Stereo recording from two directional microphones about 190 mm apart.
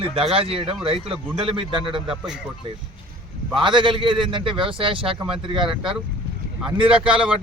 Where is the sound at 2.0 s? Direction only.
5° right (ahead or behind).